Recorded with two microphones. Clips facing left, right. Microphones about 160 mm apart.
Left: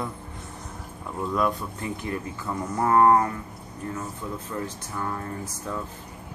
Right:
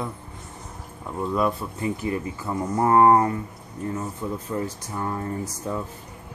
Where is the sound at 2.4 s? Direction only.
15° right (ahead or behind).